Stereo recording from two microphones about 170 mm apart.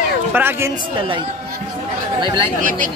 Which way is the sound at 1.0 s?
30° right (ahead or behind).